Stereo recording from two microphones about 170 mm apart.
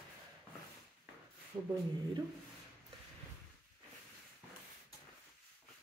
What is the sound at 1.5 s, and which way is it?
Speech, 30° right (ahead or behind).